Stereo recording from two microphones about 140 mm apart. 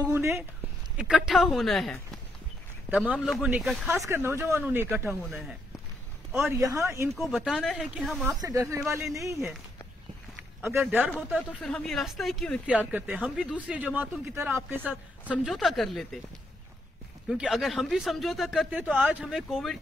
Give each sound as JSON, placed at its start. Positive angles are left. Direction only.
{"t": 0.1, "sound": "speech", "side_deg": -15}
{"t": 0.9, "sound": "speech", "side_deg": -5}
{"t": 3.9, "sound": "speech", "side_deg": -20}
{"t": 6.5, "sound": "speech", "side_deg": -20}
{"t": 7.2, "sound": "speech", "side_deg": -5}
{"t": 8.4, "sound": "speech", "side_deg": -25}
{"t": 10.6, "sound": "speech", "side_deg": -15}
{"t": 11.1, "sound": "speech", "side_deg": 0}
{"t": 14.3, "sound": "speech", "side_deg": -15}
{"t": 15.3, "sound": "speech", "side_deg": 0}
{"t": 17.3, "sound": "speech", "side_deg": 0}
{"t": 18.9, "sound": "speech", "side_deg": -10}
{"t": 19.2, "sound": "speech", "side_deg": 0}